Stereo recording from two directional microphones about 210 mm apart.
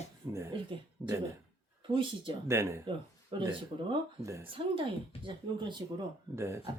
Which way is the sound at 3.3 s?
25° right (ahead or behind).